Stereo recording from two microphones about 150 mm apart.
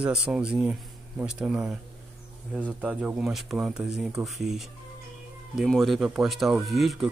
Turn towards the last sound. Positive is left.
turn(degrees=0)  # may be behind; listen again after turning